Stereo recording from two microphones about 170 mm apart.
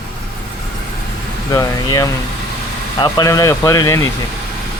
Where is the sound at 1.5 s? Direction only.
20° left (ahead or behind).